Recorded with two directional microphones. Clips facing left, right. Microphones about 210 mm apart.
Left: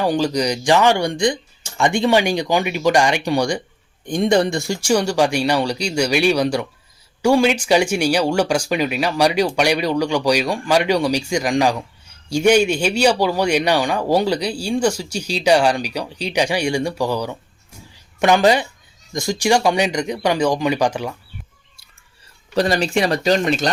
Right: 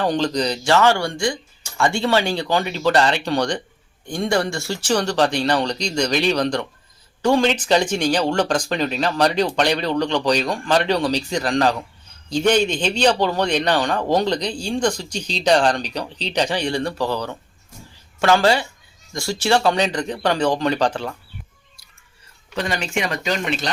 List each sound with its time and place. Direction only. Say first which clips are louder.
0.0 s a man's voice: left 2 dB; 10° left (ahead or behind)
22.5 s speech: left 6 dB; 35° left (ahead or behind)